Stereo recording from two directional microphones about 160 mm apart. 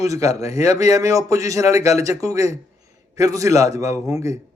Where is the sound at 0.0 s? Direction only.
20° right (ahead or behind).